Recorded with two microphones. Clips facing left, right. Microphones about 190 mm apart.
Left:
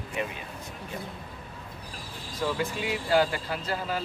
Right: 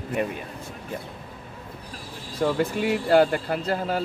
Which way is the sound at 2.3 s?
55° right (ahead or behind).